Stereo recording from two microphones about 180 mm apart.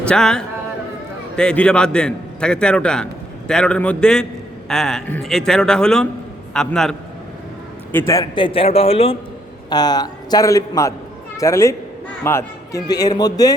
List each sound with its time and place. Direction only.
0.0 s a man's voice: 5° left (ahead or behind)
7.9 s a man's voice: 15° left (ahead or behind)